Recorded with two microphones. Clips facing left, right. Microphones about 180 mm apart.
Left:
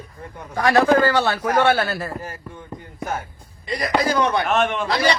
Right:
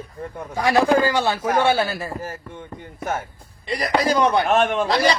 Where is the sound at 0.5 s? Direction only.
10° right (ahead or behind).